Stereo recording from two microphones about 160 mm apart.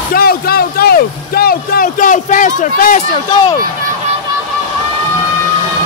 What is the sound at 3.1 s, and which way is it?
Speech, 30° left (ahead or behind).